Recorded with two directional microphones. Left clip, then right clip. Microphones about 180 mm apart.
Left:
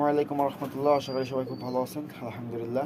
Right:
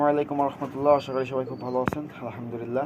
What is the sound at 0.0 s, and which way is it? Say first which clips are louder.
Speech: right 2 dB; 5° left (ahead or behind).